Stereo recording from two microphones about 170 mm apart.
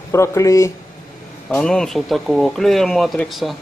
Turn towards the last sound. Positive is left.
turn(degrees=0)  # may be behind; listen again after turning